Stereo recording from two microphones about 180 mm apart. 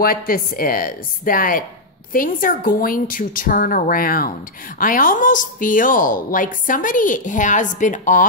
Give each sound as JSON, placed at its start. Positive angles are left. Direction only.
{"t": 0.0, "sound": "a woman's voice", "side_deg": 55}